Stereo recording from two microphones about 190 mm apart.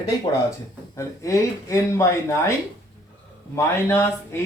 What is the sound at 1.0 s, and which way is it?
Speech, 15° left (ahead or behind).